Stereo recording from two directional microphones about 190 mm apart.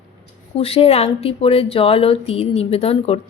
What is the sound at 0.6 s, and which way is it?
Speech, 30° left (ahead or behind).